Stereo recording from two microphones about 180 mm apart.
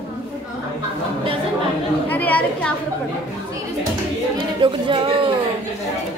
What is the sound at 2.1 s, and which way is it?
Speech, 10° left (ahead or behind).